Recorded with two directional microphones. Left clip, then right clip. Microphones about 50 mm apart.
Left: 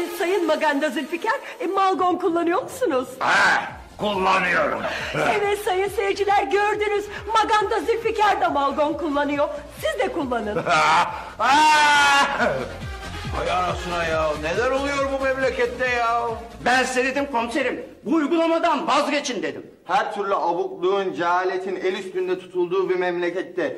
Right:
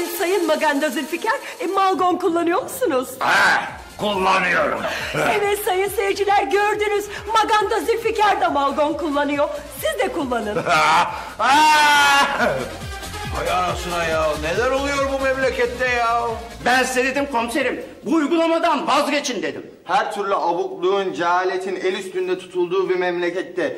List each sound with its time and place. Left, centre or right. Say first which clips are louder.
0.0 s a woman's voice: right 2 dB; left